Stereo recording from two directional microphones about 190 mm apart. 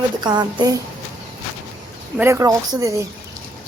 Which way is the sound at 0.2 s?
25° right (ahead or behind).